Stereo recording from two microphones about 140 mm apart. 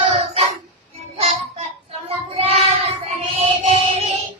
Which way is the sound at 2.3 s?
45° right (ahead or behind).